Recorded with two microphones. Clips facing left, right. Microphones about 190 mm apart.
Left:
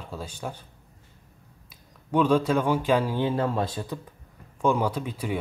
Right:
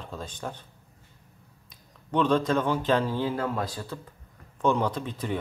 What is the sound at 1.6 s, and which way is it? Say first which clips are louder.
Speech: left 3 dB; 10° left (ahead or behind).